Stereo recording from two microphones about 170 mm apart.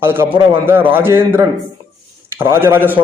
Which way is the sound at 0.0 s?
15° right (ahead or behind).